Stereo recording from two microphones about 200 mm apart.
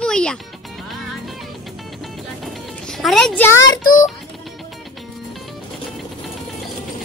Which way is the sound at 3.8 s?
40° left (ahead or behind).